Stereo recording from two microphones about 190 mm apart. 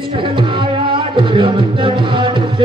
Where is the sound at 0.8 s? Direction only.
25° right (ahead or behind).